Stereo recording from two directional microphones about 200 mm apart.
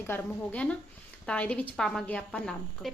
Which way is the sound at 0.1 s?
5° left (ahead or behind).